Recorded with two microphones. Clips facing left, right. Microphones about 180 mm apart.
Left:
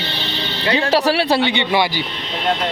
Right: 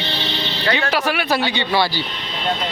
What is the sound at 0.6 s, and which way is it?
Speech, 30° left (ahead or behind).